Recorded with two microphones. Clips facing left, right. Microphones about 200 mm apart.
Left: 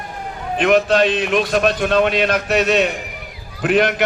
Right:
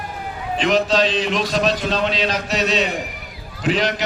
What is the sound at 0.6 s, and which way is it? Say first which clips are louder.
A man's voice: left 3 dB; 55° left (ahead or behind).